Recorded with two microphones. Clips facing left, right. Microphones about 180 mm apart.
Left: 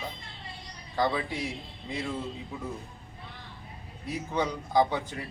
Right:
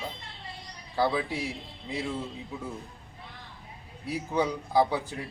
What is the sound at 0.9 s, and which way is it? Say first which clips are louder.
Speech: right 1 dB; 10° right (ahead or behind).